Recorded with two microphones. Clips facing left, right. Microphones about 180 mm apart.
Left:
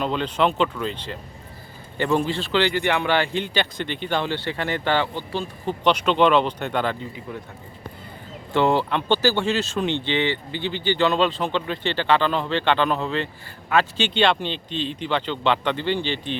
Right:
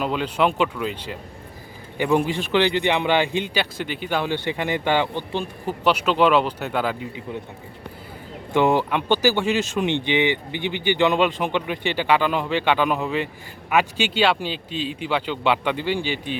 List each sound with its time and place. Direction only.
0.0 s speech: 5° right (ahead or behind)
8.5 s speech: 15° right (ahead or behind)